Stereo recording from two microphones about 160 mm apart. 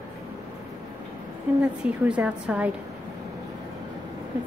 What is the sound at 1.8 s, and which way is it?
Speech, 10° right (ahead or behind).